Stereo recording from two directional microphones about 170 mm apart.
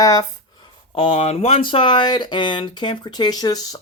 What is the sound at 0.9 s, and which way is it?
Speech, 35° left (ahead or behind).